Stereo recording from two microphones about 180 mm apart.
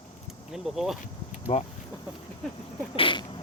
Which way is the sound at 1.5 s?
35° left (ahead or behind).